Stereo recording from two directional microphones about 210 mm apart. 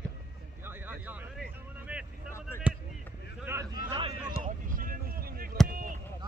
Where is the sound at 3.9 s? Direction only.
25° right (ahead or behind).